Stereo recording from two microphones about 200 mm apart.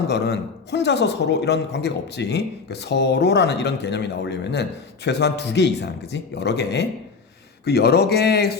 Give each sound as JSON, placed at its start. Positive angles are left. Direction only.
{"t": 0.1, "sound": "a man's voice", "side_deg": 55}